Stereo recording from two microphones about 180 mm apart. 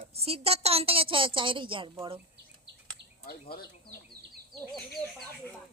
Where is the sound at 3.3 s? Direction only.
55° left (ahead or behind).